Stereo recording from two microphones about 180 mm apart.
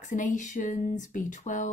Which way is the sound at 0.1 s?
45° left (ahead or behind).